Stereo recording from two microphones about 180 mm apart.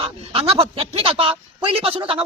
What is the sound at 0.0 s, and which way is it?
Speech, 30° right (ahead or behind).